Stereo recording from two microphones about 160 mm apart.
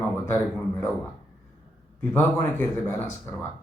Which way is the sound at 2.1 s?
10° left (ahead or behind).